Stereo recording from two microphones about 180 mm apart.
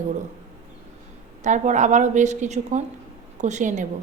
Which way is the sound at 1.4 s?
40° right (ahead or behind).